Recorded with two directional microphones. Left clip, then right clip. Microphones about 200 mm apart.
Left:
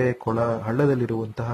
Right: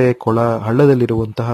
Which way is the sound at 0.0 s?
55° right (ahead or behind).